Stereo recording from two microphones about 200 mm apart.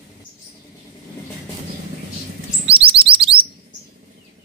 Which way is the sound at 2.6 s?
30° right (ahead or behind).